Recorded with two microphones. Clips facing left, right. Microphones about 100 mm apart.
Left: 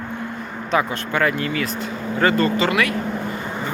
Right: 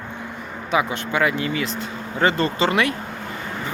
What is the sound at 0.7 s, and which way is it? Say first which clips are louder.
Speech: left 1 dB; 10° right (ahead or behind).